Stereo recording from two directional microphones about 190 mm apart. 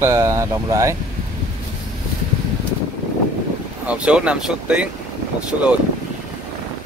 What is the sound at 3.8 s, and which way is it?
Speech, 5° right (ahead or behind).